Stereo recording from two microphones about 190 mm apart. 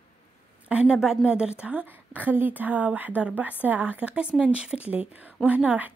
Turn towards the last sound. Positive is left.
turn(degrees=-5)  # may be behind; listen again after turning